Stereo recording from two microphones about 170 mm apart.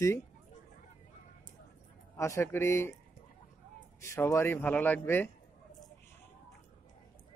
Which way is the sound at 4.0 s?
15° left (ahead or behind).